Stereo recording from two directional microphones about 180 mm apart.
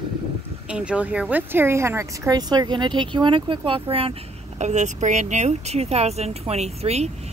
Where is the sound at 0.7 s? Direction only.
5° right (ahead or behind).